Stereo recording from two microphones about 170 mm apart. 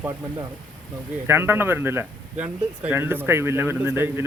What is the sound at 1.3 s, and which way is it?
Speech, 15° right (ahead or behind).